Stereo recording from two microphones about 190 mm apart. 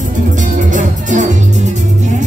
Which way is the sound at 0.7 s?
40° right (ahead or behind).